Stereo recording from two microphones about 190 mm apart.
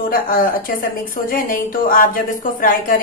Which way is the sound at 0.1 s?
50° left (ahead or behind).